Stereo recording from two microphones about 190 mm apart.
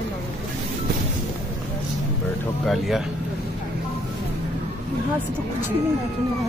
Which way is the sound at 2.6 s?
Centre (ahead or behind).